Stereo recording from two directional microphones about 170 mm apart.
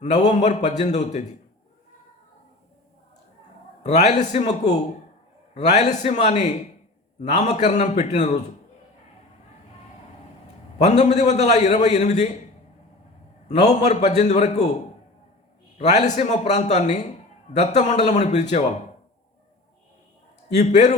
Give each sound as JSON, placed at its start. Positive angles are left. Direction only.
{"t": 0.0, "sound": "a man's voice", "side_deg": 45}
{"t": 3.8, "sound": "a man's voice", "side_deg": 40}
{"t": 5.5, "sound": "a man's voice", "side_deg": 40}
{"t": 10.8, "sound": "a man's voice", "side_deg": 45}
{"t": 13.5, "sound": "a man's voice", "side_deg": 40}
{"t": 15.8, "sound": "a man's voice", "side_deg": 45}
{"t": 20.6, "sound": "a man's voice", "side_deg": 45}